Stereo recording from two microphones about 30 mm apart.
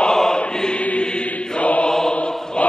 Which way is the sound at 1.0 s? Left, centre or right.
Left.